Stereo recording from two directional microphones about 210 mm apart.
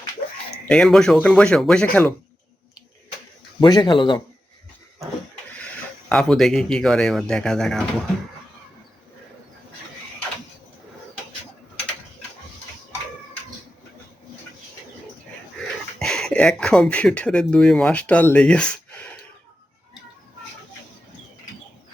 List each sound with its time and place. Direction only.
0.6 s speech: 5° left (ahead or behind)
3.6 s speech: 20° left (ahead or behind)
6.1 s speech: centre (ahead or behind)
16.0 s speech: centre (ahead or behind)